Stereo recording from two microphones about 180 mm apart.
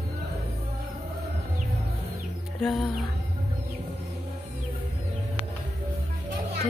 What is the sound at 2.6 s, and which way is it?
Music, centre (ahead or behind).